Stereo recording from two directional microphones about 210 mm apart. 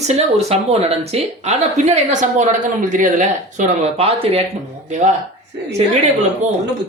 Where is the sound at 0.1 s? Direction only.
30° right (ahead or behind).